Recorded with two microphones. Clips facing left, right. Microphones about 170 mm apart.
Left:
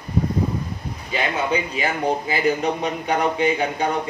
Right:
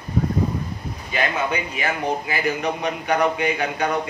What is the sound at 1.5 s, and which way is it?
A man's voice, 30° left (ahead or behind).